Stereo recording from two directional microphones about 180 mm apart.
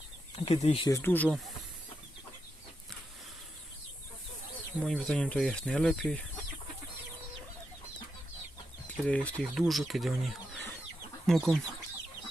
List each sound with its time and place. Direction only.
0.3 s speech: 35° left (ahead or behind)
0.9 s speech: 15° left (ahead or behind)
4.8 s speech: 5° left (ahead or behind)
9.0 s speech: 5° left (ahead or behind)